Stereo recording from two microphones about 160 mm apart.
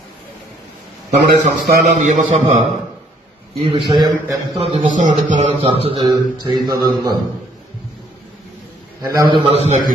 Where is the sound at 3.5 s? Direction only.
35° right (ahead or behind).